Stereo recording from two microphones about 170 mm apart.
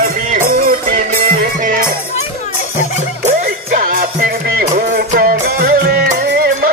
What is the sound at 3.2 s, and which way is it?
Music, 55° right (ahead or behind).